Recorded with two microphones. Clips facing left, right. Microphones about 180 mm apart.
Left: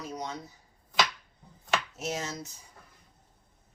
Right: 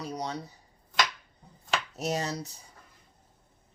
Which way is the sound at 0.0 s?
35° right (ahead or behind).